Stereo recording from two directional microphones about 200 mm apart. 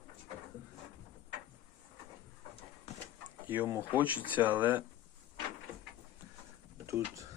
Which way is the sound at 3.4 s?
10° right (ahead or behind).